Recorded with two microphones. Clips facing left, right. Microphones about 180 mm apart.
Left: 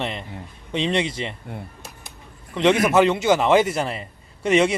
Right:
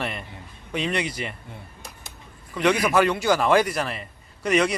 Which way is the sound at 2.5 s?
25° left (ahead or behind).